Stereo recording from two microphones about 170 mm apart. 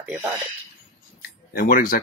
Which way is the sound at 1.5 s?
60° left (ahead or behind).